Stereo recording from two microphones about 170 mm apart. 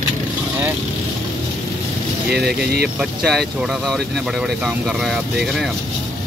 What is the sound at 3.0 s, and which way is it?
Speech, centre (ahead or behind).